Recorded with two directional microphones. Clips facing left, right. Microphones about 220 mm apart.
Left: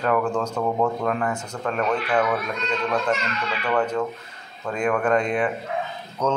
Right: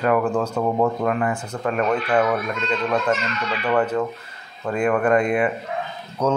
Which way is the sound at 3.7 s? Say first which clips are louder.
Right 2 dB; 5° right (ahead or behind).